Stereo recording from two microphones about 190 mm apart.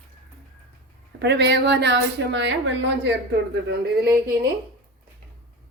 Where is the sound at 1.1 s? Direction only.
65° right (ahead or behind).